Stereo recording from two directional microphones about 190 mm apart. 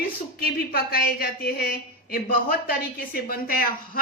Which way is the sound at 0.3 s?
55° left (ahead or behind).